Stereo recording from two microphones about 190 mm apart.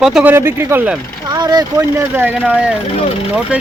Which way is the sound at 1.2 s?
20° right (ahead or behind).